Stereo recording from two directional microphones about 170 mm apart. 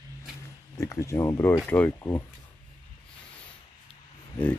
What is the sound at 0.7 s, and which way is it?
Speech, 20° left (ahead or behind).